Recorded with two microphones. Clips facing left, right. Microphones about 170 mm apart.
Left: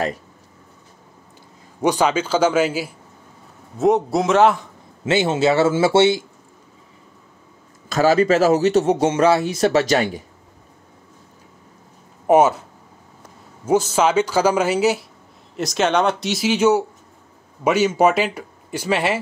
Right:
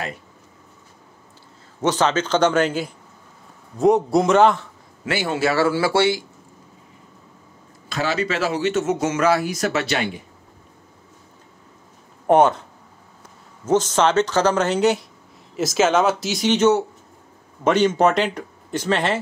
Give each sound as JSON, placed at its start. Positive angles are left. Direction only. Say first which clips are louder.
{"t": 1.8, "sound": "speech", "louder": "left 2 dB", "side_deg": 10}
{"t": 5.0, "sound": "speech", "louder": "left 4 dB", "side_deg": 20}
{"t": 7.9, "sound": "speech", "louder": "left 8 dB", "side_deg": 40}
{"t": 12.3, "sound": "speech", "louder": "left 1 dB", "side_deg": 5}
{"t": 13.7, "sound": "speech", "louder": "left 1 dB", "side_deg": 10}